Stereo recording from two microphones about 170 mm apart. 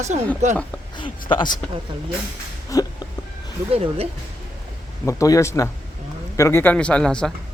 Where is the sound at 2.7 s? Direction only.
20° left (ahead or behind).